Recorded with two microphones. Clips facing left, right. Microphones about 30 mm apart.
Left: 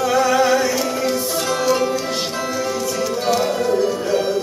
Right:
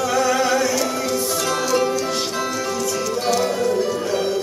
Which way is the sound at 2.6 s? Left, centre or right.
Centre.